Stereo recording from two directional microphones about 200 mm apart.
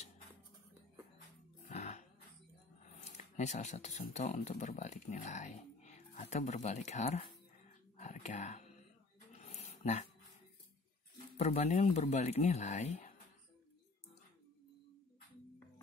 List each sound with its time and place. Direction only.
1.6 s music: 35° left (ahead or behind)
2.8 s a sound: 35° left (ahead or behind)
4.1 s speech: 35° left (ahead or behind)
9.4 s dog: 35° left (ahead or behind)
11.3 s speech: 35° left (ahead or behind)